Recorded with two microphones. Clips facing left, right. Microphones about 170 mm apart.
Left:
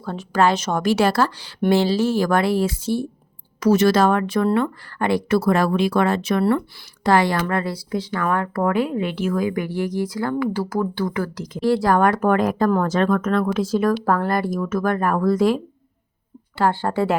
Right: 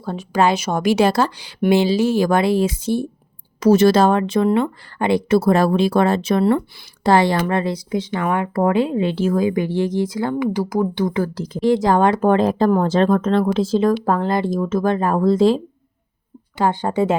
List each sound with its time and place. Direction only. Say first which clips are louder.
0.0 s speech: right 1 dB; 15° right (ahead or behind)
3.6 s speech: right 3 dB; 30° right (ahead or behind)
11.6 s speech: right 2 dB; 20° right (ahead or behind)